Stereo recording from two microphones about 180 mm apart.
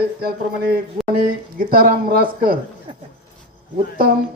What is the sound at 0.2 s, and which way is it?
A man's voice, 60° right (ahead or behind).